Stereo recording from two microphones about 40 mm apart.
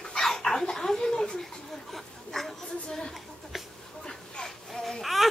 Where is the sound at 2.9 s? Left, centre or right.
Centre.